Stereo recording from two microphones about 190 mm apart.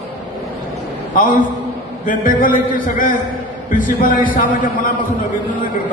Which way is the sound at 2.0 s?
45° left (ahead or behind).